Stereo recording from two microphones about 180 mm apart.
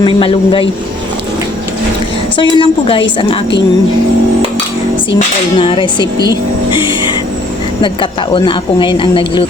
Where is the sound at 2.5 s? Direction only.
30° left (ahead or behind).